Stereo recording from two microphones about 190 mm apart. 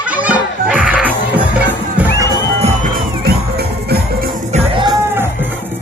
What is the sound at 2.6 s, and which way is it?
Music, 45° right (ahead or behind).